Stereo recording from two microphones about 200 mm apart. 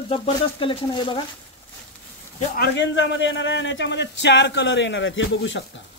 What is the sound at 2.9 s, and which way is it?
Speech, 65° left (ahead or behind).